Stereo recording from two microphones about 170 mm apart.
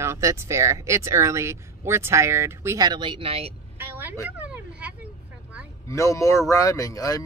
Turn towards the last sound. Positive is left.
turn(degrees=20)  # may be behind; listen again after turning